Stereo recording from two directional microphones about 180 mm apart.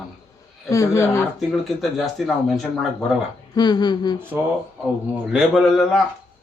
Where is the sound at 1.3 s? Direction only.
Centre (ahead or behind).